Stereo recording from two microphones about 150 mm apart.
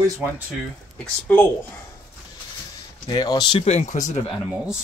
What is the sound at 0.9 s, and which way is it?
Speech, 10° left (ahead or behind).